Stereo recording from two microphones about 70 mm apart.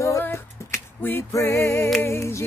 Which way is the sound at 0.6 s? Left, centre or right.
Left.